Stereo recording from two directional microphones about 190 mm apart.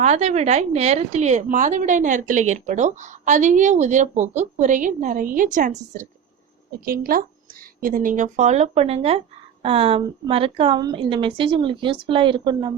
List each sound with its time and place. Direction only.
0.0 s a woman's voice: 35° right (ahead or behind)
6.7 s a woman's voice: 50° right (ahead or behind); by 12.7 s 25° right (ahead or behind)